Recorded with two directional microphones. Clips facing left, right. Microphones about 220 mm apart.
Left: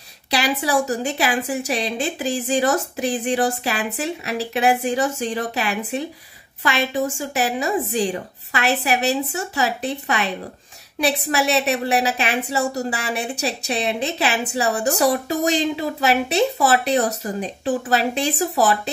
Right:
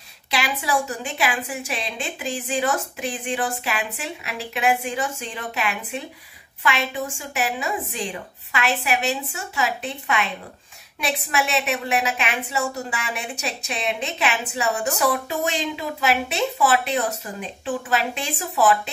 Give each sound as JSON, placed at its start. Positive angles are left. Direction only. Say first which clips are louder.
{"t": 0.3, "sound": "a woman's voice", "louder": "left 4 dB", "side_deg": 40}